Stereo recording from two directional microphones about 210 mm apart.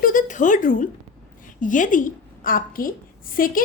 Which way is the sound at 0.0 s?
40° left (ahead or behind).